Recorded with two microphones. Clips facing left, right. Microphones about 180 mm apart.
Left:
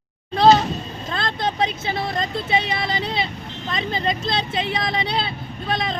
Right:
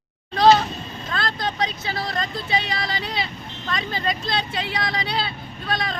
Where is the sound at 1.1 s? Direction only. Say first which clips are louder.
Left 2 dB; 25° left (ahead or behind).